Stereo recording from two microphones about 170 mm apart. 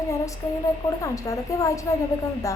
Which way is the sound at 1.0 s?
20° left (ahead or behind).